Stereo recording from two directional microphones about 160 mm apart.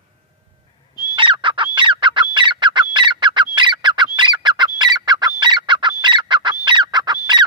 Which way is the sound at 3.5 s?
30° right (ahead or behind).